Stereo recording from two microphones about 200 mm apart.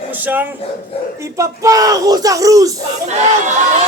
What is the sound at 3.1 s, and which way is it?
Speech, 35° right (ahead or behind).